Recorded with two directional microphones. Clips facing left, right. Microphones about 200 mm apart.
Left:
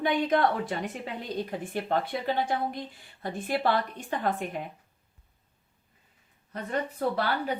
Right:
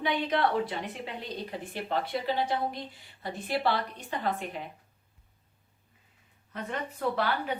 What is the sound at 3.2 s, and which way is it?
A woman's voice, 50° left (ahead or behind).